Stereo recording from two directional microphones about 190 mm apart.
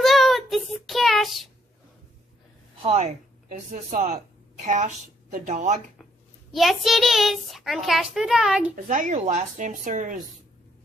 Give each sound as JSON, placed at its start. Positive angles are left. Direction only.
{"t": 0.0, "sound": "child singing", "side_deg": 0}
{"t": 2.8, "sound": "a woman's voice", "side_deg": -30}
{"t": 6.5, "sound": "a child's voice", "side_deg": 0}
{"t": 8.7, "sound": "a woman's voice", "side_deg": -45}